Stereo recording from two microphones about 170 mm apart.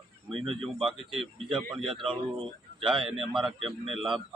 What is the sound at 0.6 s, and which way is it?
Speech, centre (ahead or behind).